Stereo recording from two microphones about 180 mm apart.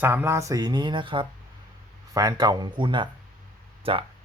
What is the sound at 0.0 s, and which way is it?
Speech, 10° right (ahead or behind).